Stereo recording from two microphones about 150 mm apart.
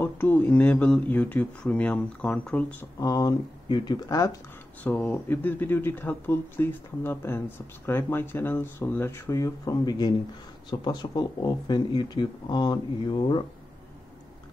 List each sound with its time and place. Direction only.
0.0 s speech: 10° left (ahead or behind)
3.0 s speech: 25° left (ahead or behind)
4.8 s speech: 10° left (ahead or behind); by 13.4 s 30° left (ahead or behind)